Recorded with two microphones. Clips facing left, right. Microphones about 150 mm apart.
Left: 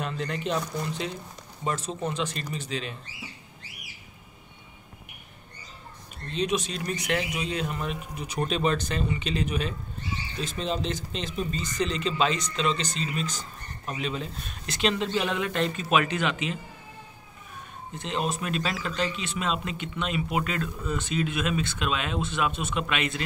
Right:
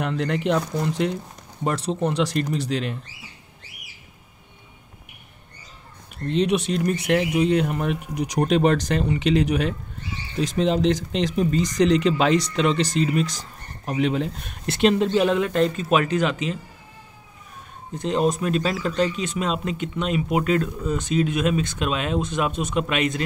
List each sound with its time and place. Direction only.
0.0 s speech: 70° right (ahead or behind)
6.2 s speech: 65° right (ahead or behind)
15.2 s speech: 35° right (ahead or behind)
17.9 s speech: 45° right (ahead or behind)